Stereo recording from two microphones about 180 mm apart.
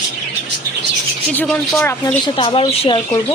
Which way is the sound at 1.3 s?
5° left (ahead or behind).